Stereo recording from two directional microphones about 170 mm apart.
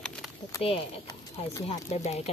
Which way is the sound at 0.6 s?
35° left (ahead or behind).